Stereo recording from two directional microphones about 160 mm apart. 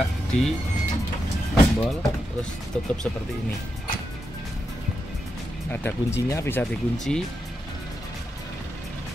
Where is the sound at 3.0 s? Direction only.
5° left (ahead or behind).